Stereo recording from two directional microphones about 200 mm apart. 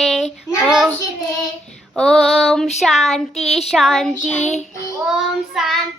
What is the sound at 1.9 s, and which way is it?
Child singing, centre (ahead or behind).